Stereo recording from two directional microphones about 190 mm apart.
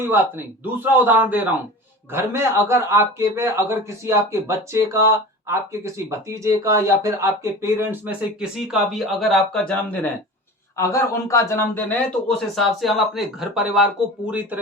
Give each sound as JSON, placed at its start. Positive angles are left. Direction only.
{"t": 0.0, "sound": "a man's voice", "side_deg": -10}